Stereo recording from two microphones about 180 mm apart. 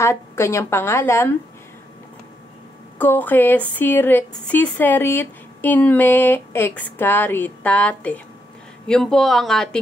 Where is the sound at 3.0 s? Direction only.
10° left (ahead or behind).